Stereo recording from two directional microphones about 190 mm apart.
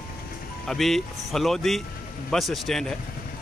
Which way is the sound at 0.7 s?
Centre (ahead or behind).